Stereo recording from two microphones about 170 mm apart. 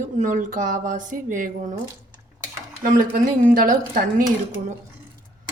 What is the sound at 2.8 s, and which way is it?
A woman's voice, 50° right (ahead or behind).